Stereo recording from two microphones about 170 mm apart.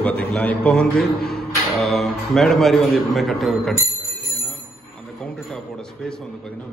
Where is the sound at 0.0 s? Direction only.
5° left (ahead or behind).